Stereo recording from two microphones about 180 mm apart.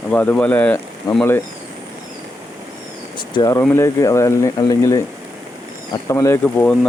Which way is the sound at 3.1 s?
25° left (ahead or behind).